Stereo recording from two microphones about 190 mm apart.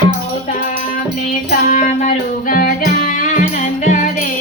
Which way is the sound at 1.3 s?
40° left (ahead or behind).